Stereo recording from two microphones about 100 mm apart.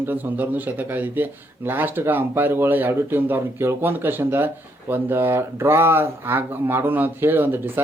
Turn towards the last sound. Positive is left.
turn(degrees=-20)  # may be behind; listen again after turning